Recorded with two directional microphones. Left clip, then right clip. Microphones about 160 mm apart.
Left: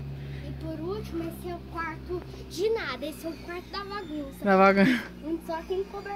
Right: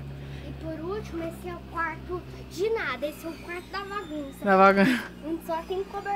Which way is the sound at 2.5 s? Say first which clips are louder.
Right 1 dB; 40° left (ahead or behind).